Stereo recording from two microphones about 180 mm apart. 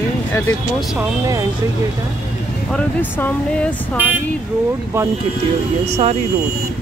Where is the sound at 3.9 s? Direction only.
10° right (ahead or behind).